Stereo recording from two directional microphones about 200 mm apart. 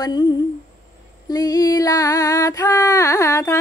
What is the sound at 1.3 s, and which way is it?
Female singing, 20° left (ahead or behind).